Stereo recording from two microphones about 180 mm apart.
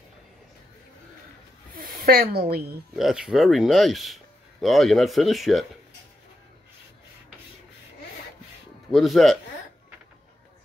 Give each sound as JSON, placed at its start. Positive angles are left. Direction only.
{"t": 1.7, "sound": "a sound", "side_deg": -55}
{"t": 3.0, "sound": "speech", "side_deg": 0}
{"t": 8.9, "sound": "speech", "side_deg": 0}